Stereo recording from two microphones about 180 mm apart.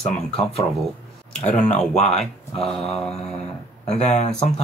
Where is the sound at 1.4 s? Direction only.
40° left (ahead or behind).